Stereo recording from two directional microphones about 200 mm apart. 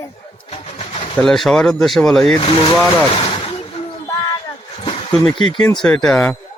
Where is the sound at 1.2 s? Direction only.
Centre (ahead or behind).